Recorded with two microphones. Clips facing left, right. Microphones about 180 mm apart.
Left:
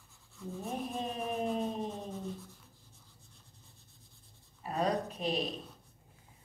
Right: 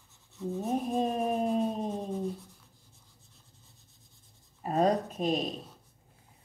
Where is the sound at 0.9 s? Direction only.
45° right (ahead or behind).